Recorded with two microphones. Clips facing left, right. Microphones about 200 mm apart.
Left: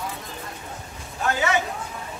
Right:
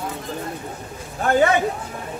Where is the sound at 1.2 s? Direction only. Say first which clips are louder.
Right 6 dB; 55° right (ahead or behind).